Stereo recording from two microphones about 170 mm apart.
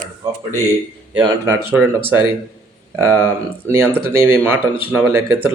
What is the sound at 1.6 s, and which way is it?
Speech, 15° right (ahead or behind).